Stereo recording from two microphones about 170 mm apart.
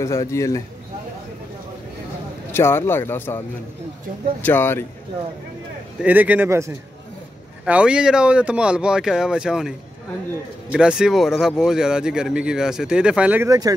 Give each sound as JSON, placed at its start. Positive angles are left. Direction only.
{"t": 0.0, "sound": "speech", "side_deg": 15}
{"t": 2.5, "sound": "speech", "side_deg": 15}
{"t": 6.0, "sound": "speech", "side_deg": -10}
{"t": 13.5, "sound": "speech", "side_deg": -20}